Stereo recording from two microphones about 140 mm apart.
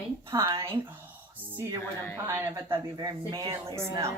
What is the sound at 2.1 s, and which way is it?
Speech, 20° right (ahead or behind).